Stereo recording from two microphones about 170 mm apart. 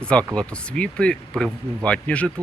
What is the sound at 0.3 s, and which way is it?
Speech, 5° left (ahead or behind).